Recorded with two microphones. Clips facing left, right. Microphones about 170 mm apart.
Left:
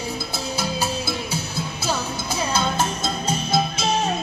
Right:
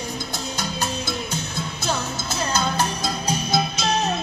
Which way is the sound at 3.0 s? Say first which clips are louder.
Even; 25° left (ahead or behind).